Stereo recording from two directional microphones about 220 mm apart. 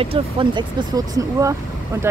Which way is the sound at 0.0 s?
25° right (ahead or behind).